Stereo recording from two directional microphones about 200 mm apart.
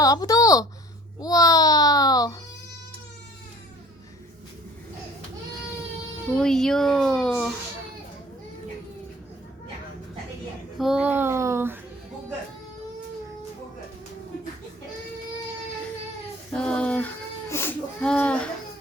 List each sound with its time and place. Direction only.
0.0 s a child's voice: 15° left (ahead or behind)
6.3 s speech: 5° left (ahead or behind)
10.8 s a child's voice: 5° right (ahead or behind)
16.5 s a sound: 5° left (ahead or behind)